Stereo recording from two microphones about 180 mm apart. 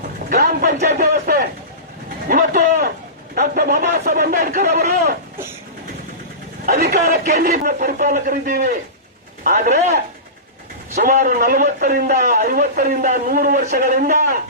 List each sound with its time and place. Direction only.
0.3 s a sound: 55° right (ahead or behind)
2.2 s a man's voice: 50° right (ahead or behind)
6.7 s a man's voice: 60° right (ahead or behind)